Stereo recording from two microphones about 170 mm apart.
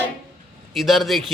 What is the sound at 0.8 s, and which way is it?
Speech, centre (ahead or behind).